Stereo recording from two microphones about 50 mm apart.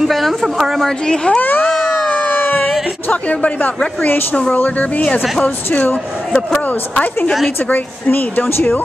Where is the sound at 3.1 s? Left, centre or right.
Left.